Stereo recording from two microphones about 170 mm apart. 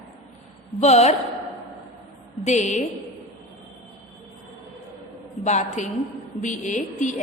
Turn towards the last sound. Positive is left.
turn(degrees=45)  # may be behind; listen again after turning